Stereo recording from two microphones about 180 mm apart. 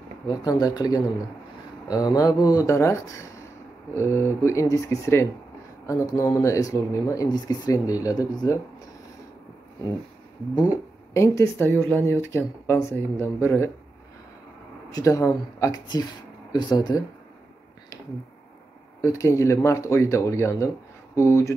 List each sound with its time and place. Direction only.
0.3 s speech: 20° left (ahead or behind)
10.5 s speech: 20° left (ahead or behind)
14.9 s speech: 20° left (ahead or behind)
18.9 s speech: 15° left (ahead or behind)